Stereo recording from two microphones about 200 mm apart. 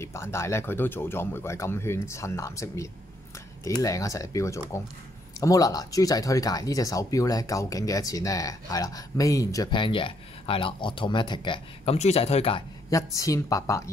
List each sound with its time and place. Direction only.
0.0 s speech: 15° left (ahead or behind); by 12.6 s 30° left (ahead or behind)
12.9 s speech: 15° left (ahead or behind)